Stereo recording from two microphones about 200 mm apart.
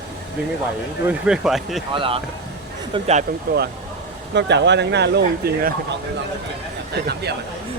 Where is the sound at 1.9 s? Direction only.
25° right (ahead or behind).